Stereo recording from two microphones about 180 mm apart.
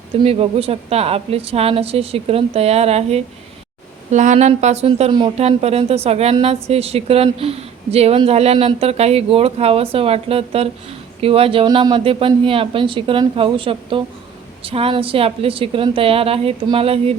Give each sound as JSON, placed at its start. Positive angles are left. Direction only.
{"t": 0.2, "sound": "speech", "side_deg": -35}